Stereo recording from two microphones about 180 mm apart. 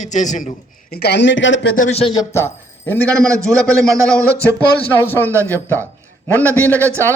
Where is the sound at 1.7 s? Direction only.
45° left (ahead or behind).